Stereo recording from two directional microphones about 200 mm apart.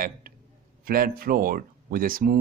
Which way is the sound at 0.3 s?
45° right (ahead or behind).